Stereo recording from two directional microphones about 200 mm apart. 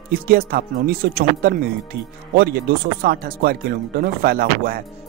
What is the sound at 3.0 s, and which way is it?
Speech, 50° right (ahead or behind).